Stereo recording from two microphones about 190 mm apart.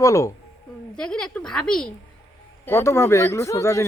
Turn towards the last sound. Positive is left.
turn(degrees=15)  # may be behind; listen again after turning